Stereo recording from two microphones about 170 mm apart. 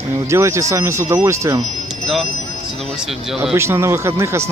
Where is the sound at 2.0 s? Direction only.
Centre (ahead or behind).